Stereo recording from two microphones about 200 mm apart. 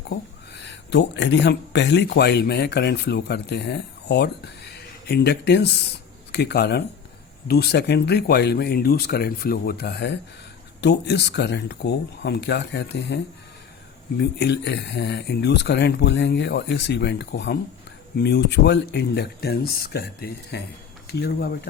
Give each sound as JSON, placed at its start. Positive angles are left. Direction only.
{"t": 0.1, "sound": "speech", "side_deg": 60}
{"t": 14.2, "sound": "speech", "side_deg": 55}